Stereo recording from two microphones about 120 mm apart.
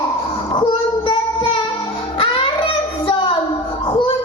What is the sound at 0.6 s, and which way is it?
Child singing, 45° left (ahead or behind).